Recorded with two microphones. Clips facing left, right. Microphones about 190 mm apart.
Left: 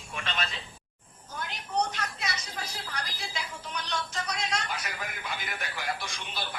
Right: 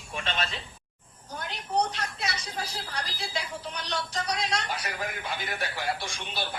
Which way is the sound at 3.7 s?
35° right (ahead or behind).